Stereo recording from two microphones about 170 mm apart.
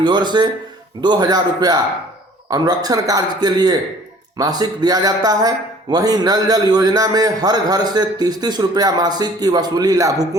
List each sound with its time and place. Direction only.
0.0 s speech: 25° right (ahead or behind)